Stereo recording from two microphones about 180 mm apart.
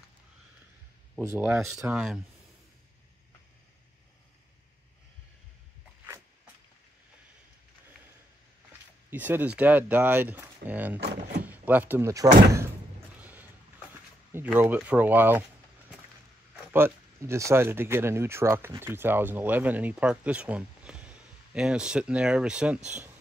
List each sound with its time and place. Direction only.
1.3 s speech: 10° right (ahead or behind)
9.1 s speech: 10° right (ahead or behind)
11.0 s speech: 70° right (ahead or behind)
11.4 s speech: 10° right (ahead or behind)
13.2 s a sound: 10° right (ahead or behind)
14.3 s speech: 10° right (ahead or behind)
16.7 s speech: 15° right (ahead or behind)